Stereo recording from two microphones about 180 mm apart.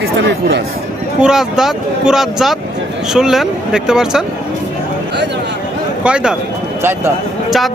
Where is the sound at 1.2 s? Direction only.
5° right (ahead or behind).